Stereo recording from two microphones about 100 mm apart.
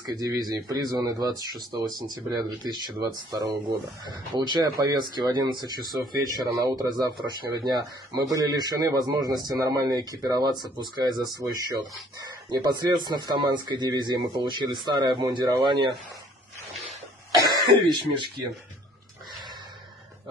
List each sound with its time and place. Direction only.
0.0 s speech: 40° right (ahead or behind)
17.5 s speech: 50° right (ahead or behind)